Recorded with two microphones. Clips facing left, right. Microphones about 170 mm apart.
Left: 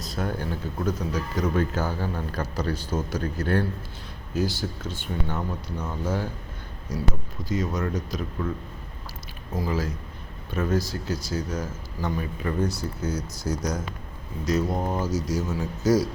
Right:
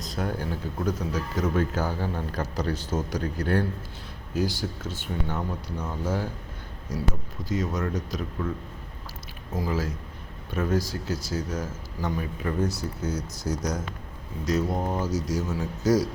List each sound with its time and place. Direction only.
0.0 s speech: 15° right (ahead or behind)
7.4 s speech: centre (ahead or behind)
9.6 s speech: 5° right (ahead or behind)